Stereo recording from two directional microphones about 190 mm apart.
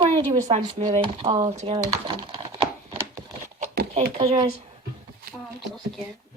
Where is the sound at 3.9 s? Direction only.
35° right (ahead or behind).